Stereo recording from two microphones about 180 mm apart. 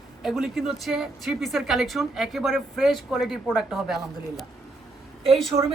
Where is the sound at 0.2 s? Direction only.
Centre (ahead or behind).